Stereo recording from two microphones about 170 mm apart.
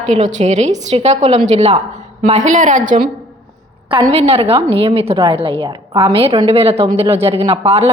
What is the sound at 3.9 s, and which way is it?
A woman's voice, 25° right (ahead or behind).